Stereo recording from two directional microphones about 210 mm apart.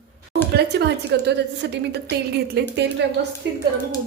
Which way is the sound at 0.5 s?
50° right (ahead or behind).